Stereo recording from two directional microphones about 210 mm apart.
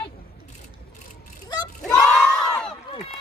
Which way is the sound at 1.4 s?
20° left (ahead or behind).